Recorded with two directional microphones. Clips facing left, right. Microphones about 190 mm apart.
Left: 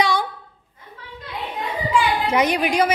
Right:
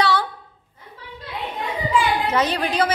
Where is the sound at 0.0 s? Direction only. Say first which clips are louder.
Even; 15° left (ahead or behind).